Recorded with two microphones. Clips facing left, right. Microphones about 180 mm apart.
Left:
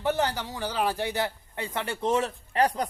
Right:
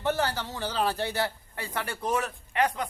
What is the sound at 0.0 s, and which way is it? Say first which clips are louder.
A man's voice: left 1 dB; 15° left (ahead or behind).